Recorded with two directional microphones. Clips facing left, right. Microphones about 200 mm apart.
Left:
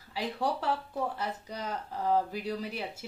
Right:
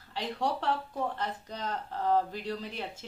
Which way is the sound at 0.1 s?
5° left (ahead or behind).